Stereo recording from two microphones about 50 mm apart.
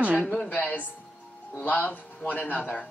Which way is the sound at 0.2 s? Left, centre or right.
Left.